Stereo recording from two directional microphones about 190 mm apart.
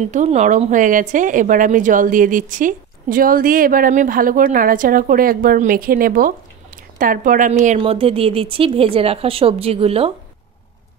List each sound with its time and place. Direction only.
0.1 s a woman's voice: 40° right (ahead or behind)
7.8 s speech: 30° right (ahead or behind)